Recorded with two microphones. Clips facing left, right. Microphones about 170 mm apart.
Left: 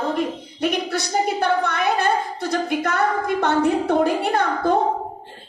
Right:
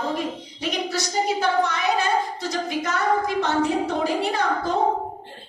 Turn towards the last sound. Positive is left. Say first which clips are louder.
# left 4 dB
turn(degrees=60)  # may be behind; listen again after turning